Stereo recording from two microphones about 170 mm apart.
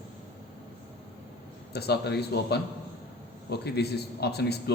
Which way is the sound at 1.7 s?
70° left (ahead or behind).